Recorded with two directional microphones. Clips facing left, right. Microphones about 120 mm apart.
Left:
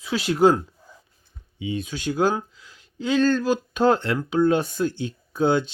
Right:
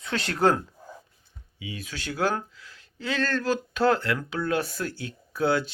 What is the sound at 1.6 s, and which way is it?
Speech, 25° left (ahead or behind).